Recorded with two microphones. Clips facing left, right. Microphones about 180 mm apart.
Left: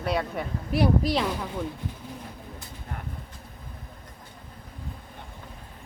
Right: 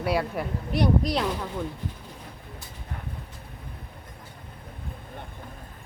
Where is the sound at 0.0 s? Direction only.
5° right (ahead or behind).